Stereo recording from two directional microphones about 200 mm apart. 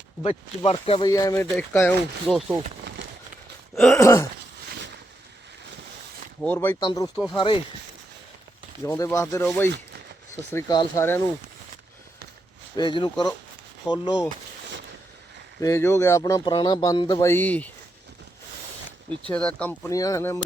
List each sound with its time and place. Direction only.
0.2 s speech: 30° left (ahead or behind)
1.0 s speech: 20° left (ahead or behind)
2.2 s speech: centre (ahead or behind)
3.8 s speech: 5° left (ahead or behind)
4.0 s speech: 15° left (ahead or behind)
6.4 s speech: 10° left (ahead or behind)
6.7 s speech: 20° left (ahead or behind)
8.8 s speech: 10° left (ahead or behind)
12.7 s speech: 25° left (ahead or behind)
15.6 s speech: 15° left (ahead or behind)
19.3 s speech: 5° left (ahead or behind)
19.9 s speech: 15° left (ahead or behind)